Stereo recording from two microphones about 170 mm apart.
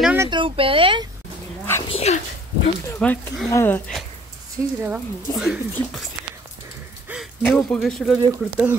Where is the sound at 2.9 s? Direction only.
10° left (ahead or behind).